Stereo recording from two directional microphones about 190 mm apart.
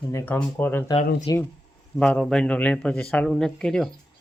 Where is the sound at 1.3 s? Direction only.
20° left (ahead or behind).